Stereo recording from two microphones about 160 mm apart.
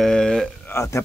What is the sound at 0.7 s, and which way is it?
Speech, 20° left (ahead or behind).